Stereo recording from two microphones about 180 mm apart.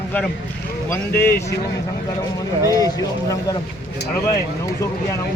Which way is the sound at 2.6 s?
20° left (ahead or behind).